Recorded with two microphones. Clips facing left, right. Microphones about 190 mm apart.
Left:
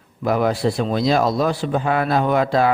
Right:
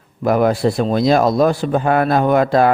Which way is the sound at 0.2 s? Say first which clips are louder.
Right 4 dB; 50° right (ahead or behind).